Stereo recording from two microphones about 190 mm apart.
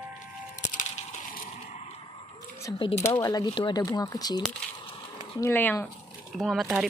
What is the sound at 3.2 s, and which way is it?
Speech, 20° left (ahead or behind).